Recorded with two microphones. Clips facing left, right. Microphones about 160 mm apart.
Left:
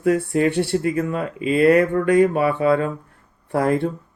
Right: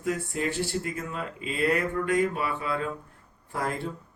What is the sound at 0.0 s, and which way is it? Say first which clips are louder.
Speech: left 11 dB; 65° left (ahead or behind).